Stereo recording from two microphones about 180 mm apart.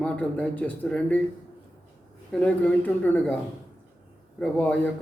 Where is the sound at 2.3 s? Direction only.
10° left (ahead or behind).